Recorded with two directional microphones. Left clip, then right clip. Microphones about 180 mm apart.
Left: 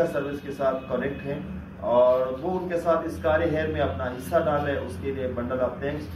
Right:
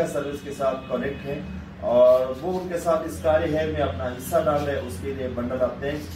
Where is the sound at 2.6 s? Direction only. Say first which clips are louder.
Even; centre (ahead or behind).